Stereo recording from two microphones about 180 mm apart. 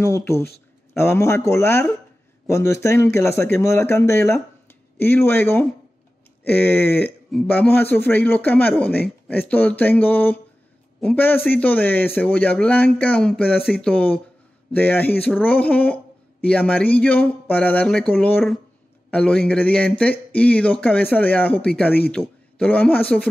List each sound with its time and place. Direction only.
0.0 s speech: 15° left (ahead or behind)